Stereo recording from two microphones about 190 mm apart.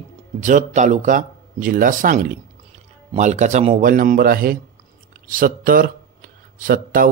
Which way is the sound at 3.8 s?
45° right (ahead or behind).